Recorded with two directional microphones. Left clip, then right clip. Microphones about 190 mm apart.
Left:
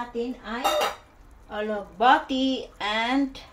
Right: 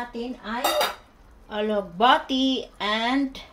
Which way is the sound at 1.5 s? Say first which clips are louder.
Right 4 dB; 50° right (ahead or behind).